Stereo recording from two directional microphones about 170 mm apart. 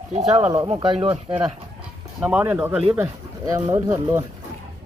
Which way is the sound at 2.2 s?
10° right (ahead or behind).